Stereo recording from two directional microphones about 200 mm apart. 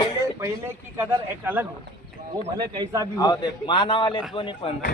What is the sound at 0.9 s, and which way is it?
A man's voice, 10° right (ahead or behind).